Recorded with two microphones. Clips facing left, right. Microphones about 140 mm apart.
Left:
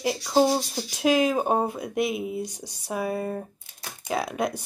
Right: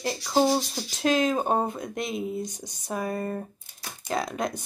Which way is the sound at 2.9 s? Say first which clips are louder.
Left 2 dB; 5° left (ahead or behind).